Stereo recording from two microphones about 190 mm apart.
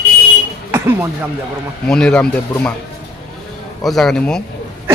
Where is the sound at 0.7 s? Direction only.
15° right (ahead or behind).